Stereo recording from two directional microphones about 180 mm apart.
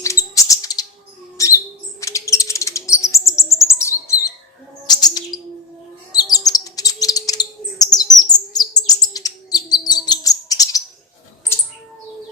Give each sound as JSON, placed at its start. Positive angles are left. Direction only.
{"t": 0.0, "sound": "bird", "side_deg": 15}
{"t": 1.4, "sound": "a sound", "side_deg": 15}
{"t": 2.0, "sound": "chirp", "side_deg": 15}
{"t": 4.9, "sound": "bird", "side_deg": 20}
{"t": 7.9, "sound": "chirp", "side_deg": 20}